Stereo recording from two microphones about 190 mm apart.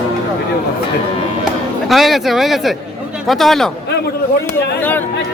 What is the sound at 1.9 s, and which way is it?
Speech, centre (ahead or behind).